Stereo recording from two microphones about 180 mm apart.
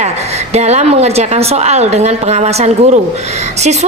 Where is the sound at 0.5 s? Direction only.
40° right (ahead or behind).